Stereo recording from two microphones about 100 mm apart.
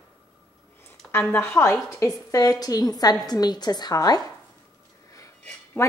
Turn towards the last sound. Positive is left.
turn(degrees=25)  # may be behind; listen again after turning